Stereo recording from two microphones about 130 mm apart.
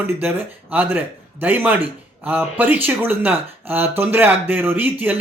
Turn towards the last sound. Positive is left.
turn(degrees=-15)  # may be behind; listen again after turning